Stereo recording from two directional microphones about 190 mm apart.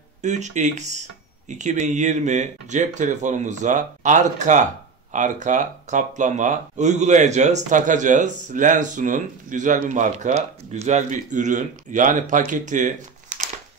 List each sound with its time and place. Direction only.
0.2 s speech: 40° right (ahead or behind)